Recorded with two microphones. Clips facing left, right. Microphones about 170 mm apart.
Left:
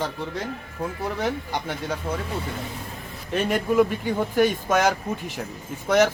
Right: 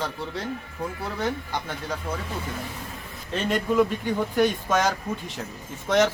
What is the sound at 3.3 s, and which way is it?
Speech, 10° left (ahead or behind).